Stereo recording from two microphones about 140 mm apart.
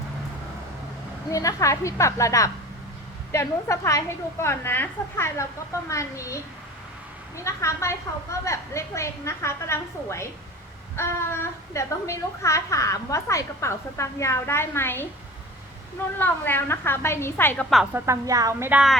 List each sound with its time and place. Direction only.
1.3 s a woman's voice: 25° left (ahead or behind)
16.1 s a woman's voice: 15° left (ahead or behind)
17.9 s a woman's voice: 20° right (ahead or behind)
18.7 s speech: 5° right (ahead or behind)